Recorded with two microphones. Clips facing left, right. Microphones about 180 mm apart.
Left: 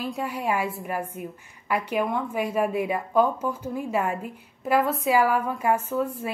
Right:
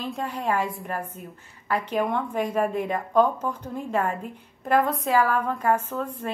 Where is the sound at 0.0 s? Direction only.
10° left (ahead or behind).